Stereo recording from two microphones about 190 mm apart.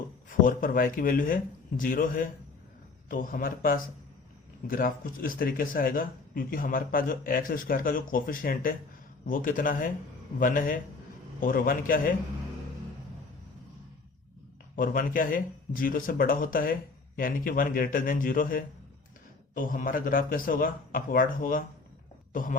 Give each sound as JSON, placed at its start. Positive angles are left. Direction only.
{"t": 0.3, "sound": "speech", "side_deg": 45}
{"t": 14.8, "sound": "a woman's voice", "side_deg": 45}